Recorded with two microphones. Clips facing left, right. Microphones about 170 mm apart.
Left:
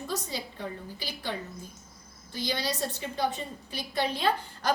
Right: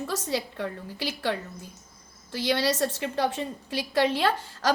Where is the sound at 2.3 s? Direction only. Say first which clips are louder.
Right 6 dB; 70° right (ahead or behind).